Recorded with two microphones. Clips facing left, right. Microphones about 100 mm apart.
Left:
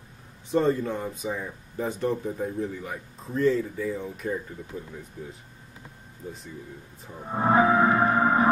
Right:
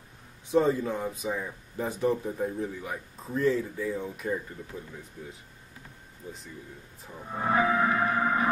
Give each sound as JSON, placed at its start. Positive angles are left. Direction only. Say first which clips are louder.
{"t": 0.5, "sound": "speech", "louder": "left 1 dB", "side_deg": -5}
{"t": 7.2, "sound": "gong", "louder": "left 5 dB", "side_deg": 35}